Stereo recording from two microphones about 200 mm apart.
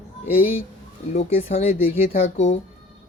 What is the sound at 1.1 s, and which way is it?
Speech, 30° left (ahead or behind).